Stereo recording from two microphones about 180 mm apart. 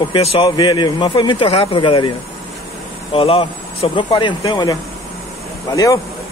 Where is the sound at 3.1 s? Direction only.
30° left (ahead or behind).